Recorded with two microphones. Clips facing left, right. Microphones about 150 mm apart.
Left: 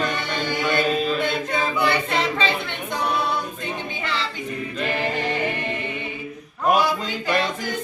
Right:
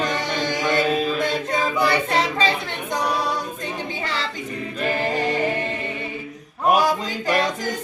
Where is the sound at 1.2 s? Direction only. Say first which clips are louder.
Right 1 dB; 35° right (ahead or behind).